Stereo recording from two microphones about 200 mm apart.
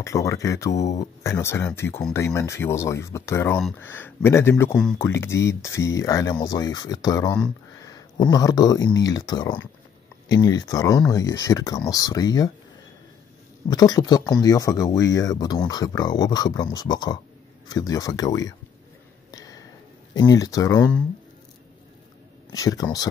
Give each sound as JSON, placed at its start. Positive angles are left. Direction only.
{"t": 0.0, "sound": "speech", "side_deg": 15}
{"t": 13.7, "sound": "speech", "side_deg": 20}
{"t": 19.3, "sound": "a sound", "side_deg": 15}
{"t": 20.2, "sound": "speech", "side_deg": 20}
{"t": 22.5, "sound": "speech", "side_deg": 15}